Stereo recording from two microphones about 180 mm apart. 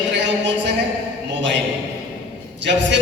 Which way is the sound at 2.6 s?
80° right.